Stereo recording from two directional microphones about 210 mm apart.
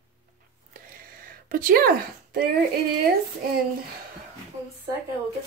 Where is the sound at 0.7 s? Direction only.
40° right (ahead or behind).